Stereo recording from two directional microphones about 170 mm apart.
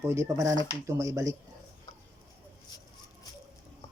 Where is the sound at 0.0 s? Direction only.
15° right (ahead or behind).